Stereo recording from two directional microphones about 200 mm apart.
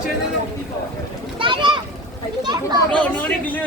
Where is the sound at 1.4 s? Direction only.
25° right (ahead or behind).